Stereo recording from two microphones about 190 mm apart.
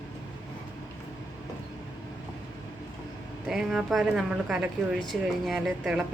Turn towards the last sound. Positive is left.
turn(degrees=0)  # may be behind; listen again after turning